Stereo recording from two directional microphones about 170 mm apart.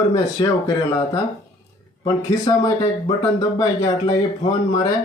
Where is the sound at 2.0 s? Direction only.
25° left (ahead or behind).